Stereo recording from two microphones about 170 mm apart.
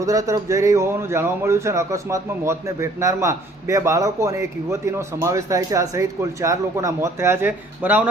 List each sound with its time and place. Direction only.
0.0 s a man's voice: 20° right (ahead or behind)